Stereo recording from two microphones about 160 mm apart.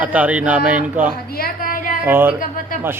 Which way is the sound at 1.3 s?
65° left (ahead or behind).